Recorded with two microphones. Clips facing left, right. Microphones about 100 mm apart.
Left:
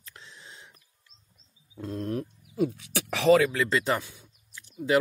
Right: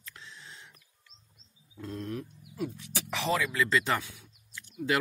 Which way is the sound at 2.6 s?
55° left (ahead or behind).